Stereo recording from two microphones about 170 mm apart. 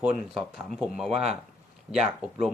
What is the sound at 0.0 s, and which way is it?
Speech, centre (ahead or behind).